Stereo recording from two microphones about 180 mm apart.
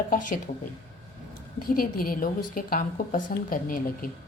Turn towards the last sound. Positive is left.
turn(degrees=50)  # may be behind; listen again after turning